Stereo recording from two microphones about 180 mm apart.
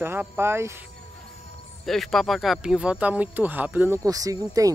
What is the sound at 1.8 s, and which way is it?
Speech, centre (ahead or behind).